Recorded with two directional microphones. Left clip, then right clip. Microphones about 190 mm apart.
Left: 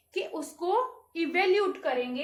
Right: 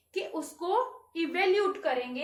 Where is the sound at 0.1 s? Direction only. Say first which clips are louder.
Left 1 dB; 20° left (ahead or behind).